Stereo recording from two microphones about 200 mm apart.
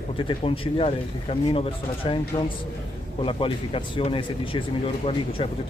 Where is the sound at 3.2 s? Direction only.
25° left (ahead or behind).